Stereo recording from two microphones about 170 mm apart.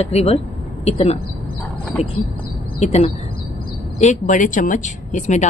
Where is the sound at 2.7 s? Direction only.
40° left (ahead or behind).